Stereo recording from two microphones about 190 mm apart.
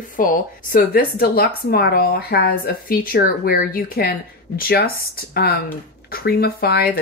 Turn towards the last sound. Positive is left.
turn(degrees=55)  # may be behind; listen again after turning